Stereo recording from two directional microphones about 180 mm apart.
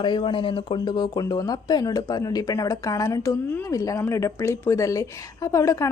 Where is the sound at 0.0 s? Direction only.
25° left (ahead or behind).